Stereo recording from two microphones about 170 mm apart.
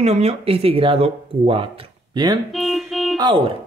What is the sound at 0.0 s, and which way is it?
Speech, 40° right (ahead or behind).